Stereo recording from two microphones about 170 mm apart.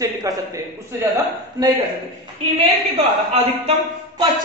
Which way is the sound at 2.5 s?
35° right (ahead or behind).